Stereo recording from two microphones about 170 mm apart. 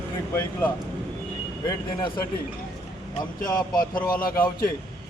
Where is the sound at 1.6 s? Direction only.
25° left (ahead or behind).